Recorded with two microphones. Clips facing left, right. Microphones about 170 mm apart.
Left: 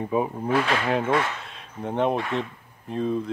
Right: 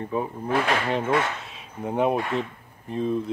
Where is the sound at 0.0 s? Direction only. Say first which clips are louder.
Left 3 dB; 15° left (ahead or behind).